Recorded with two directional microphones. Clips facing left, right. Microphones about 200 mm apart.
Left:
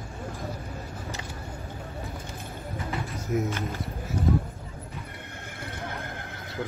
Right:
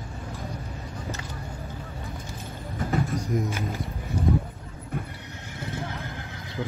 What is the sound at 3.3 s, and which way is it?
Speech, 5° left (ahead or behind).